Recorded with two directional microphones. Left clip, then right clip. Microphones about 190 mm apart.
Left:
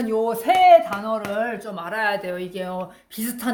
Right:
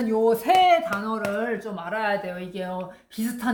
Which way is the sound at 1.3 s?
45° left (ahead or behind).